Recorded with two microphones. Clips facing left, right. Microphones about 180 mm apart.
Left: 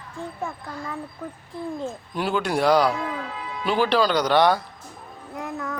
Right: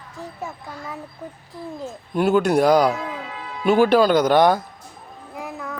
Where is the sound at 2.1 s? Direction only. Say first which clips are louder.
Right 8 dB; 45° right (ahead or behind).